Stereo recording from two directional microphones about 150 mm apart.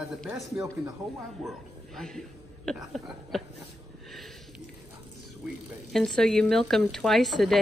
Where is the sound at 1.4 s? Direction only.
Centre (ahead or behind).